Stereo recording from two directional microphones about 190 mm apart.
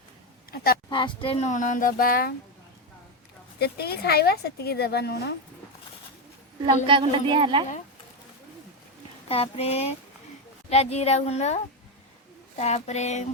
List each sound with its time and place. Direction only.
0.5 s a sound: 55° left (ahead or behind)
0.9 s speech: 25° left (ahead or behind); by 2.3 s 50° left (ahead or behind)
3.6 s a woman's voice: 55° left (ahead or behind)
6.8 s speech: 25° right (ahead or behind)
9.3 s speech: 30° left (ahead or behind)